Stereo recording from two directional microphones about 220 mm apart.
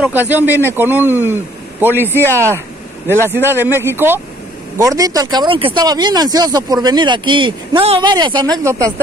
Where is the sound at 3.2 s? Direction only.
10° right (ahead or behind).